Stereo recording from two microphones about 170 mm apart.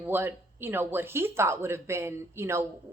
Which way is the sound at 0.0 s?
10° right (ahead or behind).